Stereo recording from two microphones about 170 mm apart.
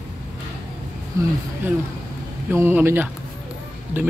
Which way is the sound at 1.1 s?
20° right (ahead or behind).